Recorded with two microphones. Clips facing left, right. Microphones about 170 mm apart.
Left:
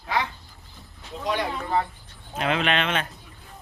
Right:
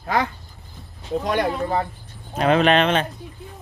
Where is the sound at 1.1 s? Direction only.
55° right (ahead or behind); by 3.1 s 35° right (ahead or behind).